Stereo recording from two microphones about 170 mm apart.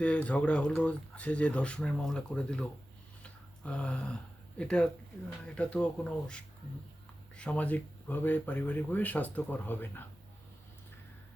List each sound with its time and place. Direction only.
0.0 s speech: 5° left (ahead or behind)
3.2 s a sound: 5° left (ahead or behind)
5.5 s speech: 5° left (ahead or behind)